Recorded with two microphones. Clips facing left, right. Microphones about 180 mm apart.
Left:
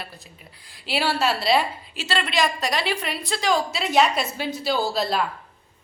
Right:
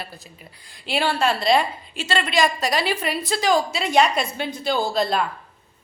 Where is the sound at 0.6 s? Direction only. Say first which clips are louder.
Right 2 dB; 5° left (ahead or behind).